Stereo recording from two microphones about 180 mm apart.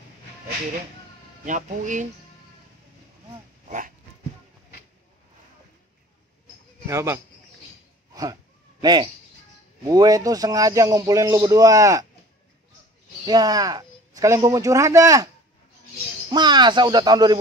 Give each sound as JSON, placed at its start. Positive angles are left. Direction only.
{"t": 1.4, "sound": "speech", "side_deg": -45}
{"t": 3.6, "sound": "dog", "side_deg": -45}
{"t": 6.9, "sound": "speech", "side_deg": -15}
{"t": 8.1, "sound": "a sound", "side_deg": -20}
{"t": 8.8, "sound": "a man's voice", "side_deg": -25}
{"t": 13.2, "sound": "speech", "side_deg": -20}
{"t": 16.3, "sound": "a man's voice", "side_deg": -25}